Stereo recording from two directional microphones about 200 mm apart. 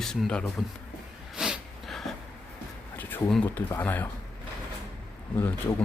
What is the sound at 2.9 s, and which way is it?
Speech, 10° left (ahead or behind).